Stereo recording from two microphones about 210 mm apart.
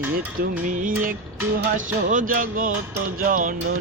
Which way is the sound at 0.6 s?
40° right (ahead or behind).